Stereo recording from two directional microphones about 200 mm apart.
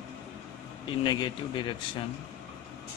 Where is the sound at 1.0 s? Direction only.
20° left (ahead or behind).